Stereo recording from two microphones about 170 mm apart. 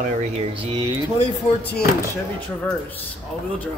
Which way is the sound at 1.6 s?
75° left (ahead or behind).